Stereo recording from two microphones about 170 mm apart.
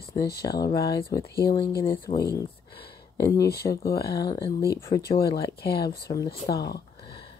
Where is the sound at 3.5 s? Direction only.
65° left (ahead or behind).